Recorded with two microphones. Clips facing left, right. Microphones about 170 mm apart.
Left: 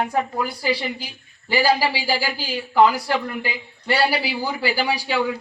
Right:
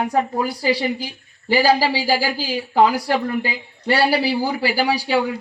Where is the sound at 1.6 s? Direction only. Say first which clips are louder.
Right 2 dB; 35° right (ahead or behind).